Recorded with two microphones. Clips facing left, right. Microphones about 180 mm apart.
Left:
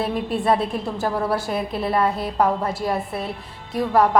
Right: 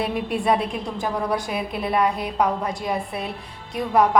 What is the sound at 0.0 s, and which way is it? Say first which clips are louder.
Speech: left 1 dB; centre (ahead or behind).